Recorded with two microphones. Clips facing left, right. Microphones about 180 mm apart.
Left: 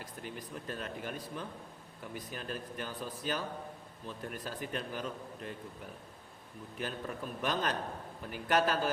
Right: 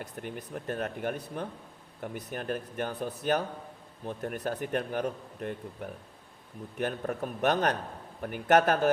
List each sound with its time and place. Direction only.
0.0 s a man's voice: 55° right (ahead or behind)